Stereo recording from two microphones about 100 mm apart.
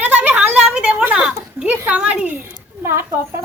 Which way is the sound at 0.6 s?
10° right (ahead or behind).